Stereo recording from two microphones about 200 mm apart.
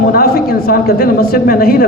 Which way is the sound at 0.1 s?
50° left (ahead or behind).